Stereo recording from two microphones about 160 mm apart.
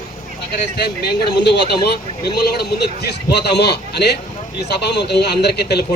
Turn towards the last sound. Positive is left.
turn(degrees=90)